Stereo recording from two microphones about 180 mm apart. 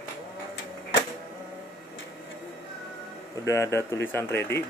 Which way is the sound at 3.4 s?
15° left (ahead or behind).